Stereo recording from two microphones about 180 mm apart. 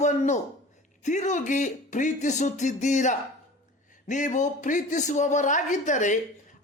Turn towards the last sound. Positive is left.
turn(degrees=45)  # may be behind; listen again after turning